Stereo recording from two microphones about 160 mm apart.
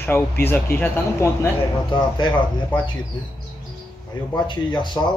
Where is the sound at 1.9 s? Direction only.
30° left (ahead or behind).